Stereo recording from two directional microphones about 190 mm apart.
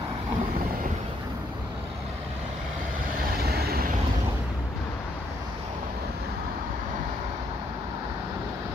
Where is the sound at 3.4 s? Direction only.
55° right (ahead or behind).